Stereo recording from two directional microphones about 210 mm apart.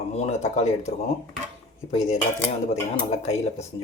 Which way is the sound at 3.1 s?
30° left (ahead or behind).